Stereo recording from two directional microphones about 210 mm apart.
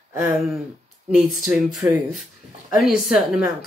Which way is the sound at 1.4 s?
5° right (ahead or behind).